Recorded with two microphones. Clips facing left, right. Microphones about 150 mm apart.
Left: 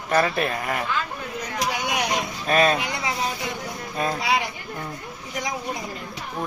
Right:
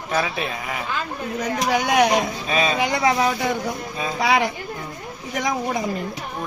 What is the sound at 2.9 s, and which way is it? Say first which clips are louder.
Speech: right 8 dB; 75° right (ahead or behind).